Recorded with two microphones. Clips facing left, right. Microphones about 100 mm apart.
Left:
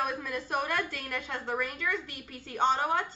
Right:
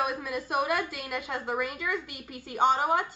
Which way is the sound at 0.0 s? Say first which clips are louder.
Right 2 dB; 10° right (ahead or behind).